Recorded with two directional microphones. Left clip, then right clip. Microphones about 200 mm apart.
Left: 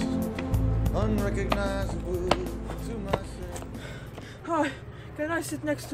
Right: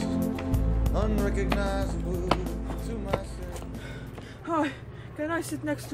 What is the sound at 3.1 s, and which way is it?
Music, 15° left (ahead or behind).